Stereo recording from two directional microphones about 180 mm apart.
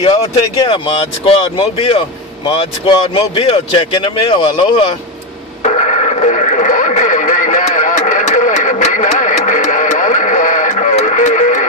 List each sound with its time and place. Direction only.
0.0 s speech: 30° left (ahead or behind)
5.6 s radio: 40° left (ahead or behind)